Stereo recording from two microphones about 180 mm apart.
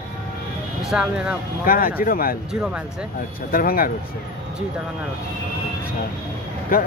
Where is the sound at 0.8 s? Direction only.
5° right (ahead or behind).